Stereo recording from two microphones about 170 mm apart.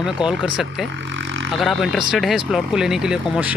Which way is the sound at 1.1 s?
90° right.